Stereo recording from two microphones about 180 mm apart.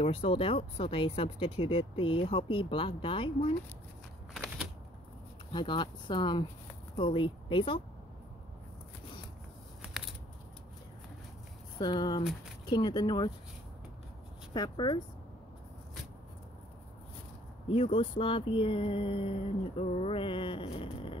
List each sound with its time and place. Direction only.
0.0 s speech: 30° left (ahead or behind)
5.5 s speech: 25° left (ahead or behind)
11.8 s speech: 25° left (ahead or behind)
14.5 s speech: 25° left (ahead or behind)
17.6 s speech: 30° left (ahead or behind)